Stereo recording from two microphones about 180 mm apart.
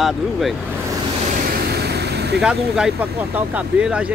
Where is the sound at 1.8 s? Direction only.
65° right (ahead or behind).